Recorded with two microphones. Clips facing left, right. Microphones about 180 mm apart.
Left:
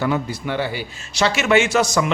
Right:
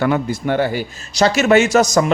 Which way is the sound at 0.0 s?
55° right (ahead or behind).